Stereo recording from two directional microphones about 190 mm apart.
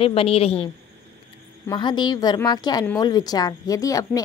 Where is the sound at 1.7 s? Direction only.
25° left (ahead or behind).